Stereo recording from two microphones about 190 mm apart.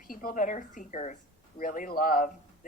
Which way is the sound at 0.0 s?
50° left (ahead or behind).